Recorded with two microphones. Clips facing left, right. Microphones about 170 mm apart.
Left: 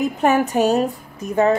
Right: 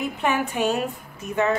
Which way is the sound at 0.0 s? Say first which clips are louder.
Left 7 dB; 45° left (ahead or behind).